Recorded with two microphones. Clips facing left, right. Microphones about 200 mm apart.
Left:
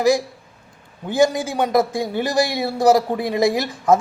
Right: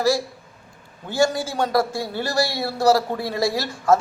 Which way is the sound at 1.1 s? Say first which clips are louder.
Left 3 dB; 20° left (ahead or behind).